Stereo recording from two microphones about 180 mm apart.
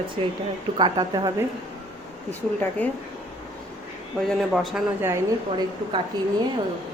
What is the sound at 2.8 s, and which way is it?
Speech, 10° left (ahead or behind).